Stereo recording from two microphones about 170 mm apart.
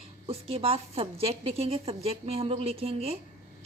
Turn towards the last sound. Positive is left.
turn(degrees=-35)  # may be behind; listen again after turning